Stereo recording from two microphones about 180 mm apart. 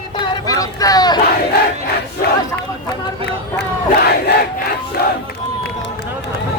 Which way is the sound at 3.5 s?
65° left (ahead or behind).